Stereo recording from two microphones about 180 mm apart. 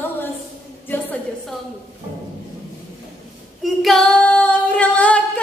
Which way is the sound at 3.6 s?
Centre (ahead or behind).